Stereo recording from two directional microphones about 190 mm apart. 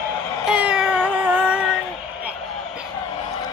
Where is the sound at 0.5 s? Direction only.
5° right (ahead or behind).